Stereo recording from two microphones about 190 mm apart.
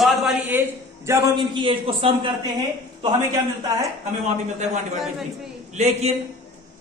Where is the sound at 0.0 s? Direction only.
Centre (ahead or behind).